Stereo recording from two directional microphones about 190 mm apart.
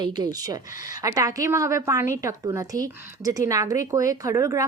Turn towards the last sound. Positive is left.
turn(degrees=-15)  # may be behind; listen again after turning